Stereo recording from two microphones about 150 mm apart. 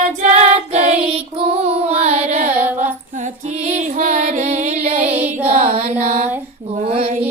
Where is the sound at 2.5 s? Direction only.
15° right (ahead or behind).